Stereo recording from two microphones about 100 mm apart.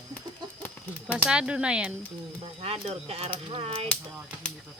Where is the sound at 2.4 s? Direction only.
90° right; by 3.9 s 70° right (ahead or behind).